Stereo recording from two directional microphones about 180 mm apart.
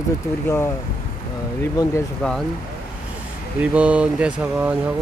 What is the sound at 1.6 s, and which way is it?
Speech, 15° left (ahead or behind).